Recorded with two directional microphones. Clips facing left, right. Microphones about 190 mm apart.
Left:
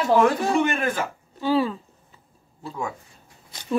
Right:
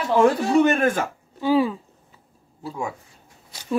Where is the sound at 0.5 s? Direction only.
45° right (ahead or behind).